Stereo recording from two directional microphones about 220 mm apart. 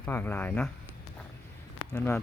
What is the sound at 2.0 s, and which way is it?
Speech, 5° left (ahead or behind).